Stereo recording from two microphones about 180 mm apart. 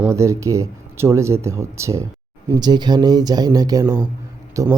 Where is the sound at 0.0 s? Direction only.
15° right (ahead or behind).